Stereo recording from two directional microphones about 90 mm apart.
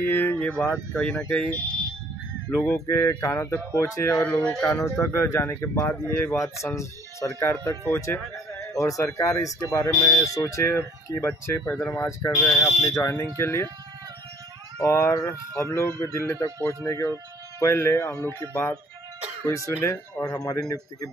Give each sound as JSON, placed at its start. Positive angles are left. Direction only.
{"t": 0.1, "sound": "speech", "side_deg": 20}
{"t": 2.7, "sound": "speech", "side_deg": 30}
{"t": 4.2, "sound": "speech", "side_deg": 20}
{"t": 5.1, "sound": "speech", "side_deg": 30}
{"t": 8.7, "sound": "speech", "side_deg": 35}
{"t": 14.8, "sound": "speech", "side_deg": 30}